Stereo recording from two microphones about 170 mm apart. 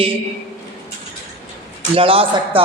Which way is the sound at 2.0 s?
30° right (ahead or behind).